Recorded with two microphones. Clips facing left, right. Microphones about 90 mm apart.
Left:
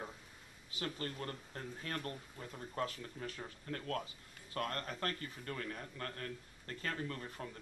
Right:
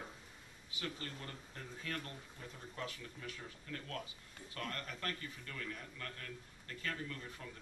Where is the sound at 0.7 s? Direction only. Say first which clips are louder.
Left 3 dB; 40° left (ahead or behind).